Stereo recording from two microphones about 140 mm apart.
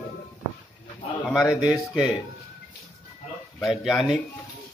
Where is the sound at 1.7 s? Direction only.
5° right (ahead or behind).